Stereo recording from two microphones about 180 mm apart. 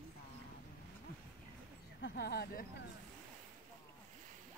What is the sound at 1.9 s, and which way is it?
Speech, 65° left (ahead or behind).